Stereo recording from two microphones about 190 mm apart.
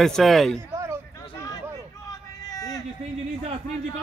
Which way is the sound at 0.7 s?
15° right (ahead or behind).